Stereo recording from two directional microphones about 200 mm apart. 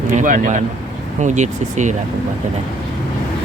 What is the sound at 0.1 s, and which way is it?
Speech, 40° right (ahead or behind).